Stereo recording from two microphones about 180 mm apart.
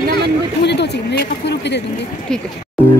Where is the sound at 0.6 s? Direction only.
70° left (ahead or behind).